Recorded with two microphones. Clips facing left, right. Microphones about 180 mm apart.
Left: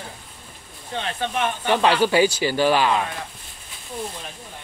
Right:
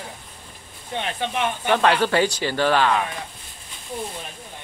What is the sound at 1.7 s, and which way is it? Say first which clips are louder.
Speech: left 1 dB; 10° left (ahead or behind).